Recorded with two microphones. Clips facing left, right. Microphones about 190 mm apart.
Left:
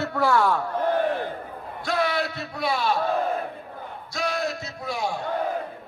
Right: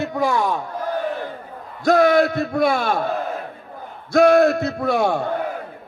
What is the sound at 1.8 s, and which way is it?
A man's voice, 45° right (ahead or behind).